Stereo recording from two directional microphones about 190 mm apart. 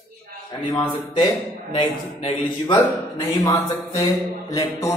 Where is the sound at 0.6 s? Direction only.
20° left (ahead or behind).